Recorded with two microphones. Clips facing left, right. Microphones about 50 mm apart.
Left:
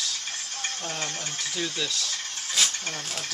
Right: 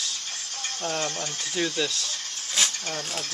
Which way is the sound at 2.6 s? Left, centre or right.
Centre.